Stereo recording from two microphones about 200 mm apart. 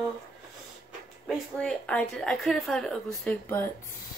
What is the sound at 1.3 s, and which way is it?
Speech, 5° left (ahead or behind).